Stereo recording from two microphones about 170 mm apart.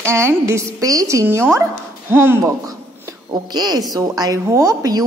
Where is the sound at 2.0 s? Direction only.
15° right (ahead or behind).